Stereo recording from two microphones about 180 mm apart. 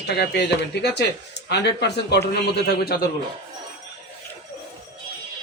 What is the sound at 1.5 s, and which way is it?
Speech, 70° left (ahead or behind).